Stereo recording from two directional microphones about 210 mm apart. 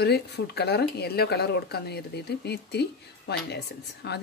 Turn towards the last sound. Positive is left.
turn(degrees=55)  # may be behind; listen again after turning